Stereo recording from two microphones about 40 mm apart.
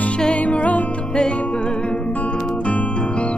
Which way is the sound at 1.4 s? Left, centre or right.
Left.